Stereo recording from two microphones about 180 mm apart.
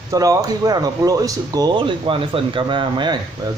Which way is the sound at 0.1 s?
20° right (ahead or behind).